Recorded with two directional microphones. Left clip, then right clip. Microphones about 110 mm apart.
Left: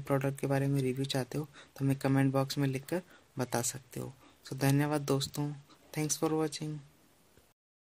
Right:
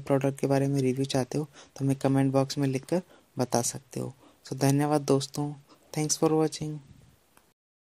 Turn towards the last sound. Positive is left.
turn(degrees=-35)  # may be behind; listen again after turning